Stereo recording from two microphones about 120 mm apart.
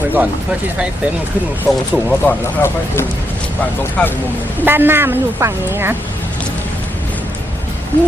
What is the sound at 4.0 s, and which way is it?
Speech, 10° left (ahead or behind).